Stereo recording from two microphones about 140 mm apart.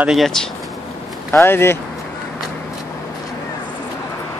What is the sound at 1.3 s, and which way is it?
Speech, 20° left (ahead or behind).